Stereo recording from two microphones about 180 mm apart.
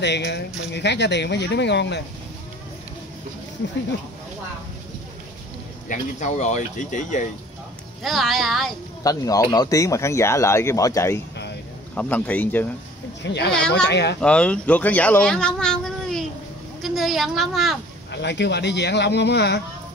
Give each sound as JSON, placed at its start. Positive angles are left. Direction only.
{"t": 0.0, "sound": "speech", "side_deg": 70}
{"t": 5.9, "sound": "speech", "side_deg": 40}
{"t": 8.0, "sound": "speech", "side_deg": 0}
{"t": 9.0, "sound": "speech", "side_deg": 20}
{"t": 13.2, "sound": "speech", "side_deg": 70}
{"t": 13.5, "sound": "speech", "side_deg": 5}
{"t": 13.8, "sound": "speech", "side_deg": 70}
{"t": 14.2, "sound": "speech", "side_deg": 5}
{"t": 18.1, "sound": "speech", "side_deg": 75}